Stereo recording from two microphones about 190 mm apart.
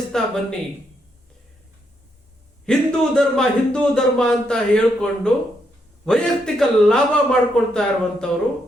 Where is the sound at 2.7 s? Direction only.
5° left (ahead or behind).